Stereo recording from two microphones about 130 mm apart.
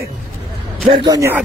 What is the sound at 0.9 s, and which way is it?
Speech, 30° right (ahead or behind).